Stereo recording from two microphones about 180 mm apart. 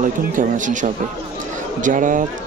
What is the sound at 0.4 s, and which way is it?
Speech, 45° right (ahead or behind).